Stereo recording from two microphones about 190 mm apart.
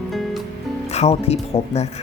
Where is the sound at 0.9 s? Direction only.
35° left (ahead or behind).